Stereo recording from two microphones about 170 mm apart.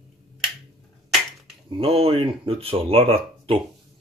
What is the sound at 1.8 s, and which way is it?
Speech, 35° right (ahead or behind).